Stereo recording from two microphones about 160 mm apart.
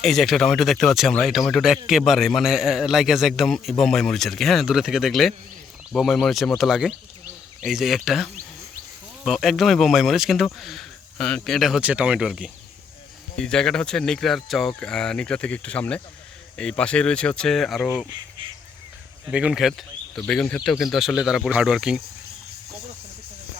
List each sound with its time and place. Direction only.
0.0 s speech: centre (ahead or behind)
17.7 s speech: 15° left (ahead or behind)
18.1 s a sound: 30° right (ahead or behind)
19.3 s speech: 5° right (ahead or behind)